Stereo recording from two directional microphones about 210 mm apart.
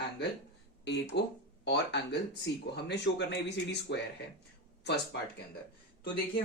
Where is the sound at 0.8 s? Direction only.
55° left (ahead or behind).